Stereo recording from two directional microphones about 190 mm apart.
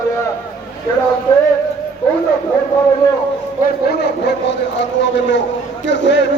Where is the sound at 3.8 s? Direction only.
60° left (ahead or behind).